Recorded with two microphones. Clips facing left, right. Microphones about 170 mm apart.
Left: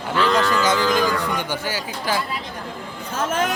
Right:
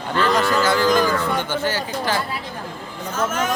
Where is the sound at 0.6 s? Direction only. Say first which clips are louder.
Right 2 dB; 20° left (ahead or behind).